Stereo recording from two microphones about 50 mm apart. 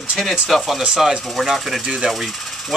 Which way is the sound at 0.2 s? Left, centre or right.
Centre.